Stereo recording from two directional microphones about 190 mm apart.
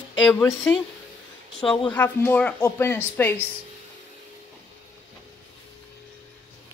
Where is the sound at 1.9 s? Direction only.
10° left (ahead or behind).